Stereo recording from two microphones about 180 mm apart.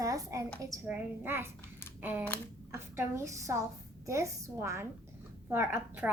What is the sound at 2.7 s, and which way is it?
A woman's voice, 15° right (ahead or behind).